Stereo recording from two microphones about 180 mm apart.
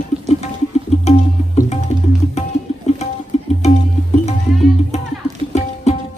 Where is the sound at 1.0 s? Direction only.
40° left (ahead or behind).